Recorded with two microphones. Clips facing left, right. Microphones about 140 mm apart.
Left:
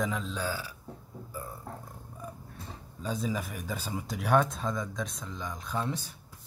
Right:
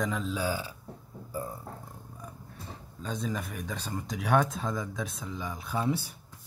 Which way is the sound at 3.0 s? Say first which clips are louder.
Left 1 dB; 5° left (ahead or behind).